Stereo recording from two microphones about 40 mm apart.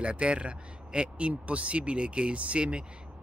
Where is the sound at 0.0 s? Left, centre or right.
Right.